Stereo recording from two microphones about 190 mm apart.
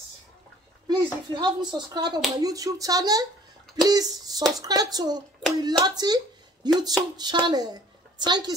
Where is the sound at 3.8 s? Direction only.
20° right (ahead or behind).